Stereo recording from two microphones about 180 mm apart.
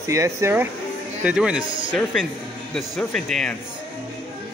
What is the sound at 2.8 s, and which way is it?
Speech, 5° left (ahead or behind).